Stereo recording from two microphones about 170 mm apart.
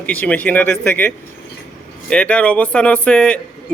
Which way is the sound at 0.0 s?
10° left (ahead or behind).